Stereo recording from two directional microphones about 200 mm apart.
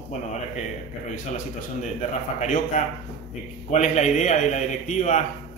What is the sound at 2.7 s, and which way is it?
A man's voice, 40° left (ahead or behind).